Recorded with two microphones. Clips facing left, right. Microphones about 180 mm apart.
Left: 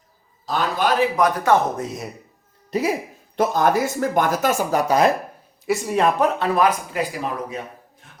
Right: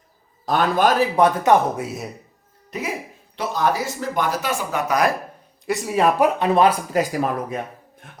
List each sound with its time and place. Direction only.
0.4 s a man's voice: 55° right (ahead or behind)
0.9 s speech: 30° right (ahead or behind)
1.5 s speech: 10° right (ahead or behind)
2.6 s speech: 35° left (ahead or behind)
3.3 s speech: 50° left (ahead or behind); by 5.1 s 25° left (ahead or behind)
5.6 s speech: centre (ahead or behind)
6.5 s speech: 30° right (ahead or behind)
6.9 s speech: 45° right (ahead or behind)